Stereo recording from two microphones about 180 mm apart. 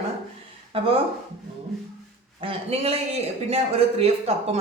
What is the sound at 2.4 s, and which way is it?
A man's voice, 30° right (ahead or behind).